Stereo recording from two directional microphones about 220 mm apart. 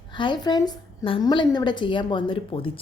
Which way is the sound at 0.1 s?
20° left (ahead or behind).